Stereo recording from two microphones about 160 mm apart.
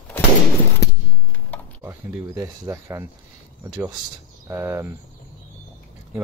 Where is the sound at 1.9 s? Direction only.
20° right (ahead or behind).